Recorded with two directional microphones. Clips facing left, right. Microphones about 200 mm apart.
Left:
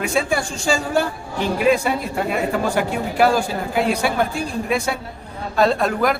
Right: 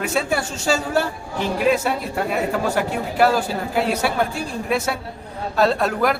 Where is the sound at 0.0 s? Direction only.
5° right (ahead or behind).